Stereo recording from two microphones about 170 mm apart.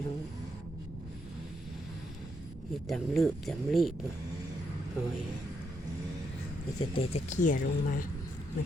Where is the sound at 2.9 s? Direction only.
Centre (ahead or behind).